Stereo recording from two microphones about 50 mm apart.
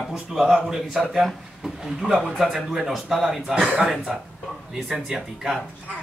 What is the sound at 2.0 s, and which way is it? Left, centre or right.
A man's voice, centre.